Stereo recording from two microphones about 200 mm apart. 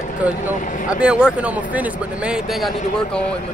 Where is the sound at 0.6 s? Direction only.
40° left (ahead or behind).